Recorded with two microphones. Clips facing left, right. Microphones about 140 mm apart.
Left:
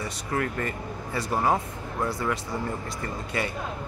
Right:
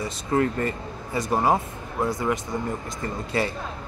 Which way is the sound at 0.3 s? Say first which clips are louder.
Right 6 dB; 30° right (ahead or behind).